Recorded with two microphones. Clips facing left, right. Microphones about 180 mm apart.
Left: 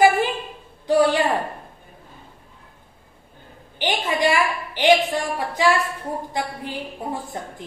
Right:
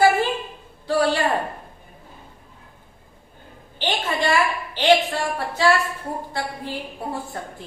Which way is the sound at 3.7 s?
15° left (ahead or behind).